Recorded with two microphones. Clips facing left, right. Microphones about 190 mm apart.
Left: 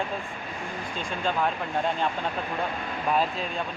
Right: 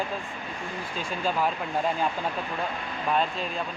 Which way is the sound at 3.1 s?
Centre (ahead or behind).